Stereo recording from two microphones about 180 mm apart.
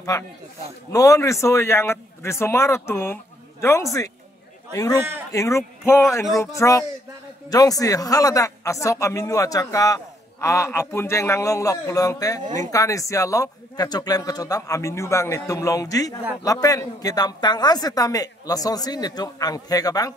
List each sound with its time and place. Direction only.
0.1 s speech: 15° left (ahead or behind)
4.9 s speech: 10° right (ahead or behind)
5.3 s a woman's voice: 15° left (ahead or behind)